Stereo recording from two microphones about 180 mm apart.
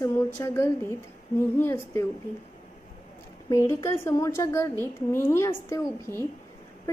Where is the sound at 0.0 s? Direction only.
15° left (ahead or behind).